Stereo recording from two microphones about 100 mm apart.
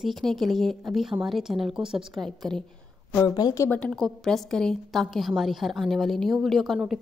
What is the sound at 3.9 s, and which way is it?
A woman's voice, 5° left (ahead or behind).